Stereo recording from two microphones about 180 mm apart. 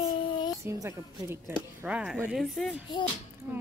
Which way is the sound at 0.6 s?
15° right (ahead or behind).